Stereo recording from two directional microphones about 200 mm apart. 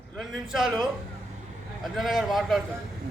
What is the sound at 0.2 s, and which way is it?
Speech, centre (ahead or behind).